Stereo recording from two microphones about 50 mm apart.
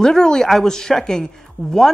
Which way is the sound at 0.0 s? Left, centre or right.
Centre.